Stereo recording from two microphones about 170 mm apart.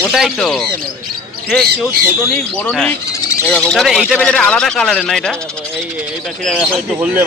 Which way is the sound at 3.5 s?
5° left (ahead or behind).